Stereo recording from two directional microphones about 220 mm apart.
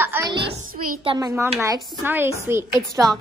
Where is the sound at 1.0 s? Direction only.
20° right (ahead or behind).